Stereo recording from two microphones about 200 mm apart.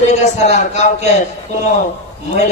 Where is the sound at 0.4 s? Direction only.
35° left (ahead or behind).